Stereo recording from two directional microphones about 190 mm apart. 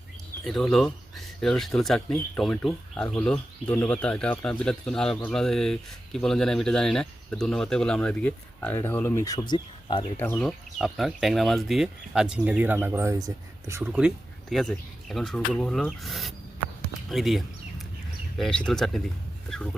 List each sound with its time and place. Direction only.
0.4 s speech: 5° left (ahead or behind); by 10.1 s 25° left (ahead or behind)
10.2 s speech: 5° left (ahead or behind); by 13.9 s 15° right (ahead or behind)
14.5 s speech: centre (ahead or behind)